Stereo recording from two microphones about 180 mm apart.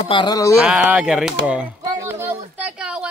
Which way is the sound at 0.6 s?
5° right (ahead or behind).